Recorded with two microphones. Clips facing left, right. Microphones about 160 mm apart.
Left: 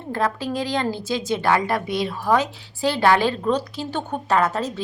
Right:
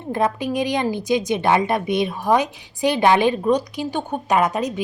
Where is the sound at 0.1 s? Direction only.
20° right (ahead or behind).